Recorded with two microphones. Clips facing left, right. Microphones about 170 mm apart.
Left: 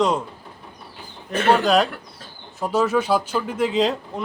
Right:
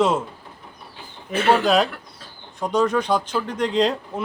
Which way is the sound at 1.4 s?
Centre (ahead or behind).